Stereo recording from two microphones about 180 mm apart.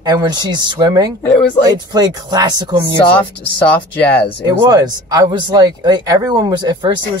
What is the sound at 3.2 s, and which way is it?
Speech, 10° left (ahead or behind).